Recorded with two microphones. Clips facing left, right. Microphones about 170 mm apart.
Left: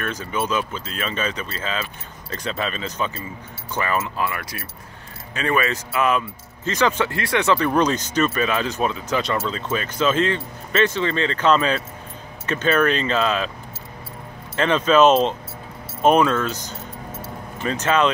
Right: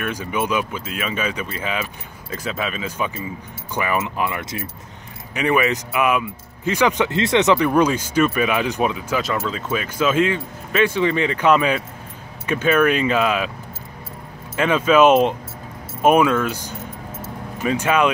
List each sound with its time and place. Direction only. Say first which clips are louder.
0.0 s speech: right 2 dB; 10° right (ahead or behind)
14.5 s speech: right 1 dB; 10° right (ahead or behind)